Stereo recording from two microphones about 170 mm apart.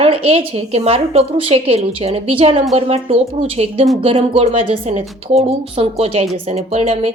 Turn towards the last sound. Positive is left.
turn(degrees=-35)  # may be behind; listen again after turning